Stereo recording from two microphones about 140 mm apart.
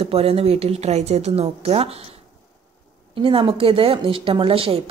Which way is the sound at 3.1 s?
40° right (ahead or behind).